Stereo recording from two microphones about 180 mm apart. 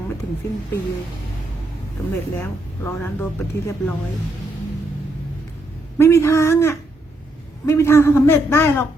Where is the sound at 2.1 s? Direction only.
15° left (ahead or behind).